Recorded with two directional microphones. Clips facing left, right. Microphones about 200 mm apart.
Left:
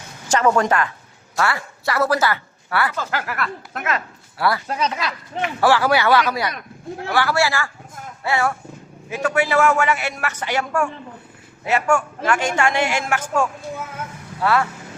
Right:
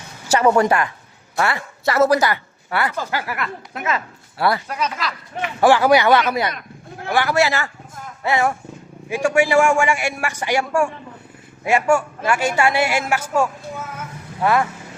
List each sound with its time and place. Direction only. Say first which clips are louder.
0.3 s a woman's voice: right 2 dB; 10° right (ahead or behind)
4.4 s a woman's voice: right 1 dB; 25° right (ahead or behind)